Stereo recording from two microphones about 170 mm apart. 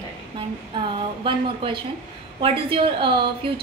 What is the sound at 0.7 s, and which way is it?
A woman's voice, 30° right (ahead or behind).